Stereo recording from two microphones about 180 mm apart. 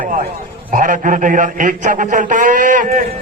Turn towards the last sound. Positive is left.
turn(degrees=-45)  # may be behind; listen again after turning